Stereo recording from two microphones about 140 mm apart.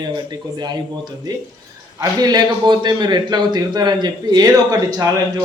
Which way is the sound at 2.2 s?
30° right (ahead or behind).